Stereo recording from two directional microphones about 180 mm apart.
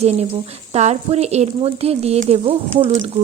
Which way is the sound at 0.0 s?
35° right (ahead or behind).